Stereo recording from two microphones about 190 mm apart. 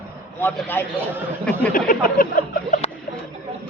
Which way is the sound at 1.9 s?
50° left (ahead or behind).